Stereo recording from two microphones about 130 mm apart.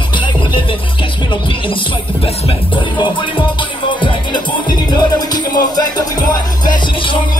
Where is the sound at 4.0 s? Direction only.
40° left (ahead or behind).